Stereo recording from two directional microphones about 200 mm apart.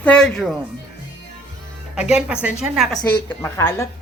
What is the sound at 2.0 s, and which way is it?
A woman's voice, 5° right (ahead or behind).